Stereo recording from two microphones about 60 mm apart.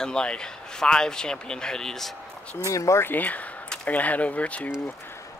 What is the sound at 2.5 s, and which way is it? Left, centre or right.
Speech, left.